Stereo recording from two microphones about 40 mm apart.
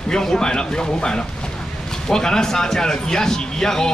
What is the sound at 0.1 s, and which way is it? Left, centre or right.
A man's voice, centre.